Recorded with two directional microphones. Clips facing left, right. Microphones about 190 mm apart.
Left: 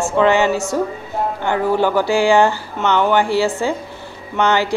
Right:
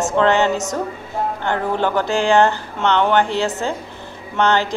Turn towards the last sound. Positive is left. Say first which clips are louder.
# even
turn(degrees=10)  # may be behind; listen again after turning